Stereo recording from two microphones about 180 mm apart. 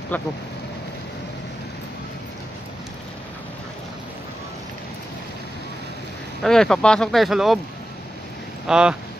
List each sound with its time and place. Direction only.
0.1 s speech: 10° left (ahead or behind)
6.4 s speech: 5° left (ahead or behind)
8.6 s speech: 5° right (ahead or behind)